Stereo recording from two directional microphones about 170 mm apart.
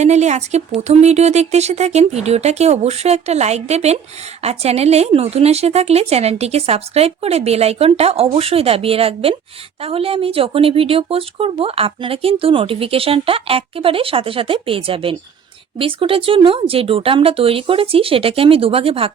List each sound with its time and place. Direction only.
0.0 s speech: 40° right (ahead or behind)